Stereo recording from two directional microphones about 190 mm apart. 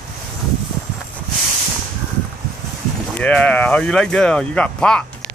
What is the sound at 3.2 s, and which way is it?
Speech, 5° left (ahead or behind).